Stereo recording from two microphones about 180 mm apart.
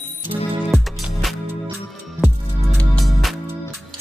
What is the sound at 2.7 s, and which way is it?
Music, centre (ahead or behind).